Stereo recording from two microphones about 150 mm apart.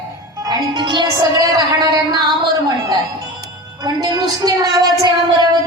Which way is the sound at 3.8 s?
25° right (ahead or behind).